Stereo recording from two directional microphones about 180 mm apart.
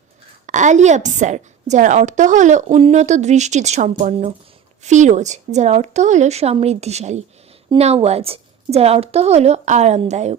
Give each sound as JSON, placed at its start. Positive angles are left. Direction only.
{"t": 0.4, "sound": "a woman's voice", "side_deg": -45}